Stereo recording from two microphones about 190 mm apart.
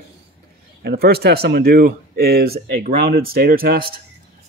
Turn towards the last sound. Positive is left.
turn(degrees=-50)  # may be behind; listen again after turning